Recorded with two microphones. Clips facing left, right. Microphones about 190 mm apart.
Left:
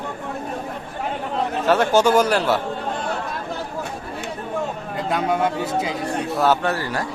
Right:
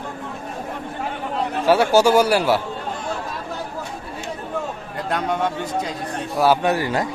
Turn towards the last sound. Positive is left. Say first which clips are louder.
# right 2 dB
turn(degrees=-15)  # may be behind; listen again after turning